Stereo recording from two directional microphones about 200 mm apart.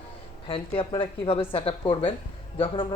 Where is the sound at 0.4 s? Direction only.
25° left (ahead or behind).